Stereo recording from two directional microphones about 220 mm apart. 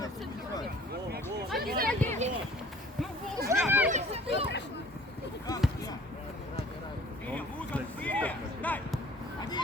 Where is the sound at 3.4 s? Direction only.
10° right (ahead or behind).